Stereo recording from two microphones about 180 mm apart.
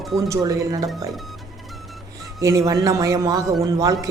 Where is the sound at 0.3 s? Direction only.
15° right (ahead or behind).